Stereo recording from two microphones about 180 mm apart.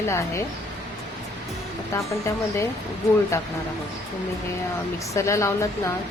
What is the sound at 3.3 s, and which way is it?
Speech, 15° left (ahead or behind).